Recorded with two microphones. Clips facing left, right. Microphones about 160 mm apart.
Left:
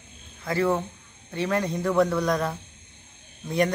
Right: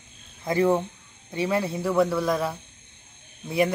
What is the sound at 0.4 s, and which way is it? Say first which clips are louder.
Speech: right 3 dB; 15° right (ahead or behind).